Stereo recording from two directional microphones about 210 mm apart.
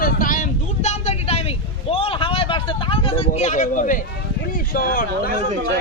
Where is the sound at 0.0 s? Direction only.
40° left (ahead or behind).